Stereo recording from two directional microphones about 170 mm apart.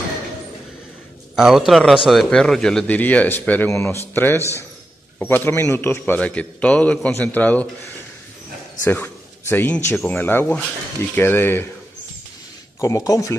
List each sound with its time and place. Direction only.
1.3 s a man's voice: centre (ahead or behind)
8.8 s a man's voice: 10° left (ahead or behind)
12.8 s speech: 20° left (ahead or behind)